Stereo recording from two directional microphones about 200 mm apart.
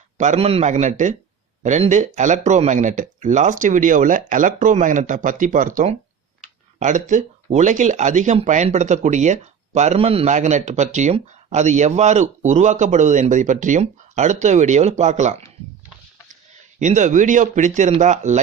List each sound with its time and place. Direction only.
0.2 s speech: 35° right (ahead or behind)
16.8 s speech: 40° right (ahead or behind)